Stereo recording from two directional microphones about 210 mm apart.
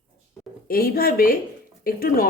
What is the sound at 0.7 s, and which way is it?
Speech, 45° left (ahead or behind).